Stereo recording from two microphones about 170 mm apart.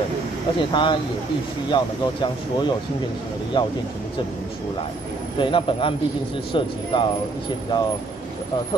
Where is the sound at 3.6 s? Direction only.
30° left (ahead or behind).